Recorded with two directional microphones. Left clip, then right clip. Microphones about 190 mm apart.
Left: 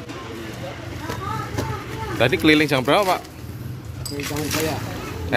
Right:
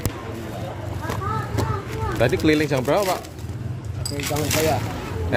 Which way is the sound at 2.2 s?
5° left (ahead or behind).